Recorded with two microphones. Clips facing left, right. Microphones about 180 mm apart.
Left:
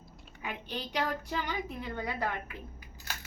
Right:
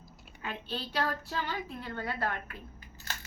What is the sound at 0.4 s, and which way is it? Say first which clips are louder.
A woman's voice: even; 15° left (ahead or behind).